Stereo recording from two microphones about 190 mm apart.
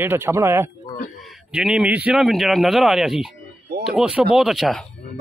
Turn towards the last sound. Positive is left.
turn(degrees=0)  # may be behind; listen again after turning